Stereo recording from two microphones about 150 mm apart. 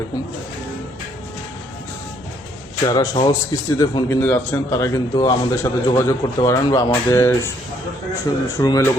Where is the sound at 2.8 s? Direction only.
25° left (ahead or behind).